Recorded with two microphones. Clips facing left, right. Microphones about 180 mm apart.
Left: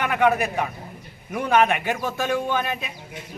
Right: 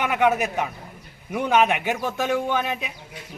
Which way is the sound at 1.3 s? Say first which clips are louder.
Even; 15° right (ahead or behind).